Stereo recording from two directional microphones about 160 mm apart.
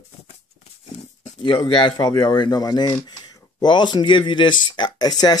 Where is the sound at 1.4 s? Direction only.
30° left (ahead or behind).